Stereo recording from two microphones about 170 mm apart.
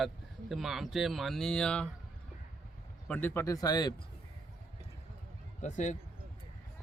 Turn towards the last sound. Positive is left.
turn(degrees=45)  # may be behind; listen again after turning